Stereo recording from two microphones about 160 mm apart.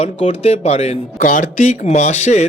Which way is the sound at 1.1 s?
55° left (ahead or behind).